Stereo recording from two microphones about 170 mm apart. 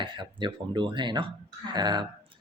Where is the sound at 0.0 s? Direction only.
30° right (ahead or behind).